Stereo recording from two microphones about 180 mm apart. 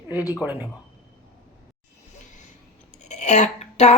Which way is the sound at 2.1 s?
45° left (ahead or behind).